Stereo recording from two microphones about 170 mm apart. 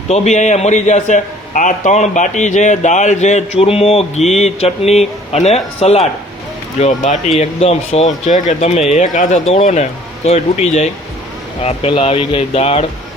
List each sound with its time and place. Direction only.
0.1 s a man's voice: 40° left (ahead or behind)